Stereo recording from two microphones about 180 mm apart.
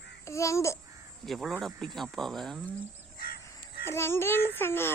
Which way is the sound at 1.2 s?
Centre (ahead or behind).